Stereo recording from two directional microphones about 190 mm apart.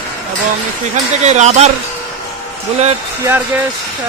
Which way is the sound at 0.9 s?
35° right (ahead or behind).